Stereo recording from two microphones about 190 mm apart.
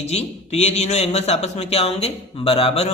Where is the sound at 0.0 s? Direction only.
35° left (ahead or behind).